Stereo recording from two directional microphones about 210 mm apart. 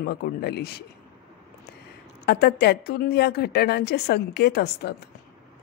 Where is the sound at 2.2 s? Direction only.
50° left (ahead or behind).